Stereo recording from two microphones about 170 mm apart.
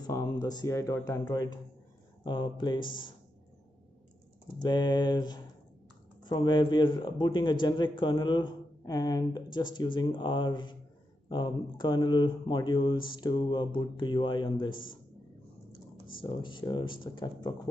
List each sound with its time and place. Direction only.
0.0 s a man's voice: 20° left (ahead or behind)
4.6 s a man's voice: 25° left (ahead or behind)